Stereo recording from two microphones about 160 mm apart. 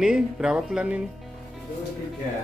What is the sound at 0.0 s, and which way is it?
Speech, 5° right (ahead or behind).